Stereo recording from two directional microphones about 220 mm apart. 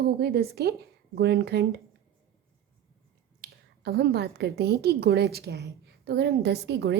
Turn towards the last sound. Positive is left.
turn(degrees=-50)  # may be behind; listen again after turning